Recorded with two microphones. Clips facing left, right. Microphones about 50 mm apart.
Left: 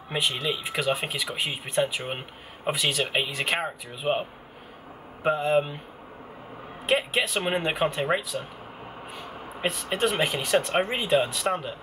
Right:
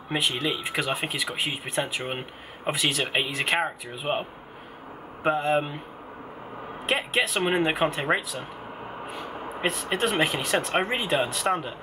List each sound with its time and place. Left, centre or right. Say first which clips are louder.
0.1 s speech: right 1 dB; centre
6.9 s speech: left 1 dB; centre